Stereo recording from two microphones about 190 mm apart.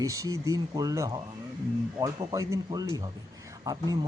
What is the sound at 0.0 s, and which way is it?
Speech, 15° right (ahead or behind).